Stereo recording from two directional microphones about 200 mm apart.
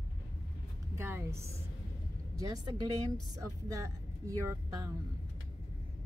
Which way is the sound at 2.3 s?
20° right (ahead or behind).